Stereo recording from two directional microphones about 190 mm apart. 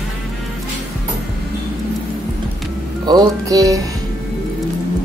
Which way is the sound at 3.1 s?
20° right (ahead or behind).